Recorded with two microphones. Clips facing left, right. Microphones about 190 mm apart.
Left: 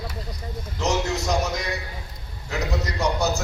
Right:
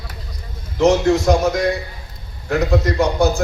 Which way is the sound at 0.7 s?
55° right (ahead or behind).